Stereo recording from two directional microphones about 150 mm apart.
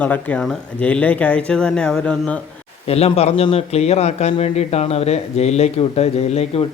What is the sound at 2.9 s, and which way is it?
A man's voice, 45° left (ahead or behind).